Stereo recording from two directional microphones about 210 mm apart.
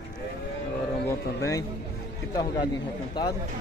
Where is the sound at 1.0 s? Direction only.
15° left (ahead or behind).